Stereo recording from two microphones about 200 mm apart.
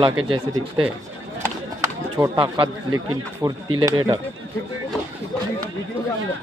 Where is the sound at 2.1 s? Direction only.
20° right (ahead or behind).